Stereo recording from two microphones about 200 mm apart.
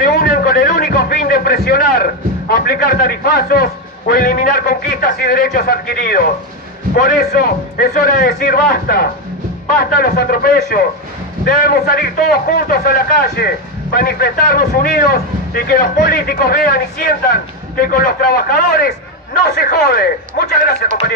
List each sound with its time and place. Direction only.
0.0 s a man's voice: 50° left (ahead or behind)